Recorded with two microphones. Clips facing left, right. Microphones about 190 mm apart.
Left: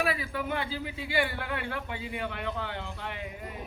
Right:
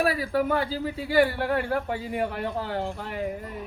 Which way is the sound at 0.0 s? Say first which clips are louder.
Right 7 dB; 40° right (ahead or behind).